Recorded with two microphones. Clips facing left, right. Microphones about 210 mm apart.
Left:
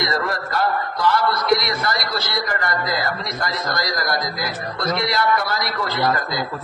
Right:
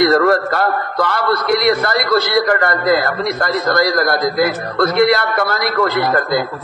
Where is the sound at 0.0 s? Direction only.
60° right (ahead or behind).